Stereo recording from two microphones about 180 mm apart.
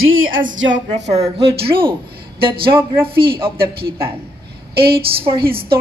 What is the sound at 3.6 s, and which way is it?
Speech, 60° right (ahead or behind).